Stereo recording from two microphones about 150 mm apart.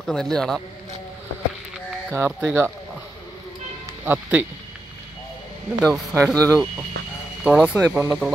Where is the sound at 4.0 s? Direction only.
10° right (ahead or behind).